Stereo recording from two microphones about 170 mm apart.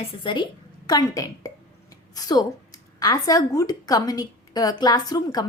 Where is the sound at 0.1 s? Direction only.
30° left (ahead or behind).